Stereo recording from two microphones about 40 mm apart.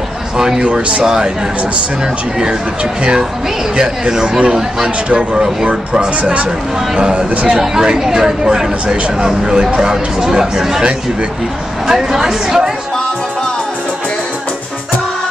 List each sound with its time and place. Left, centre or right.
0.6 s a man's voice: right
1.0 s speech: centre
2.3 s a man's voice: right
7.7 s speech: centre
11.9 s speech: centre